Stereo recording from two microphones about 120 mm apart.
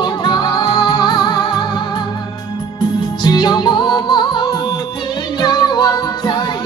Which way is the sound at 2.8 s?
40° left (ahead or behind).